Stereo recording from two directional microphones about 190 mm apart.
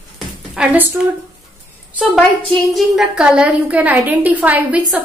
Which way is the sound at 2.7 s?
Centre (ahead or behind).